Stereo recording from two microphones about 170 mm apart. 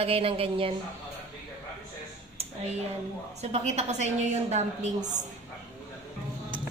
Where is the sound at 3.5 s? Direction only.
40° right (ahead or behind).